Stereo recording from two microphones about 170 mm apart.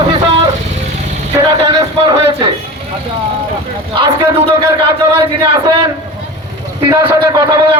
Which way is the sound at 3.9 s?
30° right (ahead or behind).